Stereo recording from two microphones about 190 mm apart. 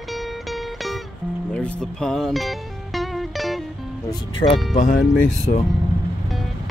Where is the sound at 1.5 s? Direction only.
5° left (ahead or behind).